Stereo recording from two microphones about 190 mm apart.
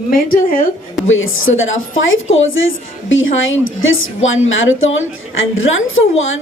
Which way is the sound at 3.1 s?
90° left.